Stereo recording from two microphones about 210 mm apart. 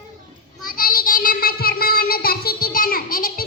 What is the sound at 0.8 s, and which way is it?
Child singing, 40° left (ahead or behind).